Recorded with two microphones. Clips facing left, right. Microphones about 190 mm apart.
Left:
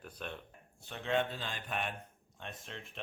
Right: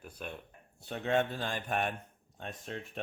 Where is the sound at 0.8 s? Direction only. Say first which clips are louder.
Right 3 dB; 45° right (ahead or behind).